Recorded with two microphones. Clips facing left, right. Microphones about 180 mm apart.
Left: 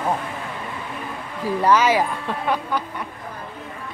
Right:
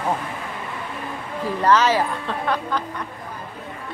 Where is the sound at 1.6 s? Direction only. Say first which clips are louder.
Even; 10° left (ahead or behind).